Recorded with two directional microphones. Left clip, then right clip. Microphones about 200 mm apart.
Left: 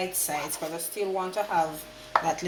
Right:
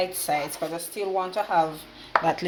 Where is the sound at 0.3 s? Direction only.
50° right (ahead or behind).